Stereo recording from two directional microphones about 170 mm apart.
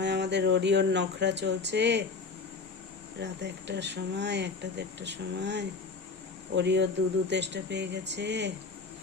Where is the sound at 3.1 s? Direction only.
85° right.